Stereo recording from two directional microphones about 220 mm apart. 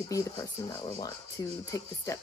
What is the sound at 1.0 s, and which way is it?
Speech, 15° left (ahead or behind).